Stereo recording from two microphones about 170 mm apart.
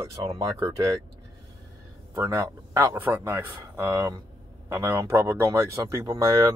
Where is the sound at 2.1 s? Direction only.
20° right (ahead or behind).